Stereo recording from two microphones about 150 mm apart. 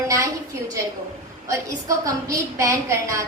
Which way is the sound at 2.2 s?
20° right (ahead or behind).